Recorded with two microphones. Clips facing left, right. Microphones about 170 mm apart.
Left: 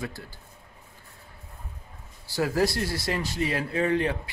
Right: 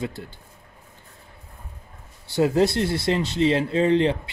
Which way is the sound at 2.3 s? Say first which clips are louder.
Right 5 dB; 20° right (ahead or behind).